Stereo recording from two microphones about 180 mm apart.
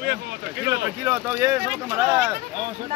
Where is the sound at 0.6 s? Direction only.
20° right (ahead or behind).